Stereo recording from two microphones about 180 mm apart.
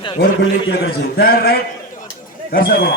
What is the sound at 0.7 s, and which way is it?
A man's voice, 60° left (ahead or behind).